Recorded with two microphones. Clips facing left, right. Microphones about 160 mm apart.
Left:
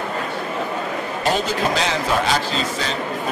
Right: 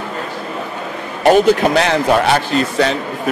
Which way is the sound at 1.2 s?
60° right (ahead or behind).